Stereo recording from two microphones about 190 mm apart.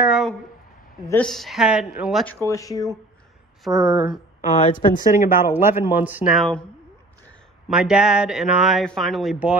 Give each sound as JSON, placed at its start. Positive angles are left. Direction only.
{"t": 0.0, "sound": "speech", "side_deg": 0}
{"t": 2.4, "sound": "speech", "side_deg": 15}
{"t": 3.6, "sound": "speech", "side_deg": 0}
{"t": 4.4, "sound": "speech", "side_deg": 40}
{"t": 5.1, "sound": "speech", "side_deg": -15}
{"t": 7.6, "sound": "speech", "side_deg": -5}